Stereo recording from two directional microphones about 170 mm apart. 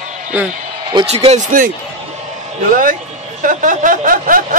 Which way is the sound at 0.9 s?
35° right (ahead or behind).